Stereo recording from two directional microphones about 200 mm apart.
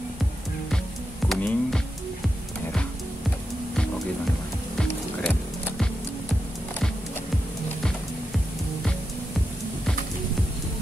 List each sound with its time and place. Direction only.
1.3 s music: centre (ahead or behind)
4.7 s music: 5° left (ahead or behind)